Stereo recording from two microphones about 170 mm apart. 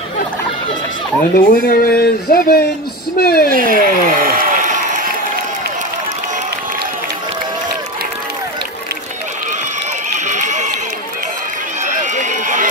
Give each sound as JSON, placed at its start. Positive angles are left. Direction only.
{"t": 1.3, "sound": "speech", "side_deg": 60}
{"t": 3.4, "sound": "a sound", "side_deg": -55}
{"t": 10.1, "sound": "run", "side_deg": -45}
{"t": 11.9, "sound": "run", "side_deg": -45}